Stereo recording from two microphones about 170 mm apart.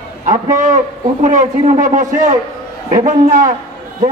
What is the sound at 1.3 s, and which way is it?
A man's voice, 45° right (ahead or behind).